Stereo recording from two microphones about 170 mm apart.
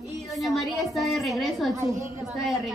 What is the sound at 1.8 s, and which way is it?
Speech, 15° right (ahead or behind).